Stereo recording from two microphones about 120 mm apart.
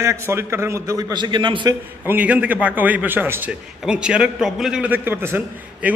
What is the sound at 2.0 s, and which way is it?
A man's voice, 10° right (ahead or behind).